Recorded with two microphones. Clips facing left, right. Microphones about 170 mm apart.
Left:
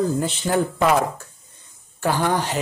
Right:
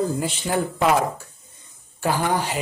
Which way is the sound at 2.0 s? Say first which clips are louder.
Left 1 dB; 10° right (ahead or behind).